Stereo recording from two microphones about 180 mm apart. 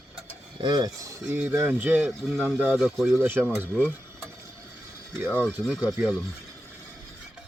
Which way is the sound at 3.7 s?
10° left (ahead or behind).